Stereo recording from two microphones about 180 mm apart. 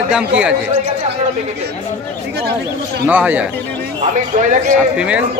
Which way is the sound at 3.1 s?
10° right (ahead or behind).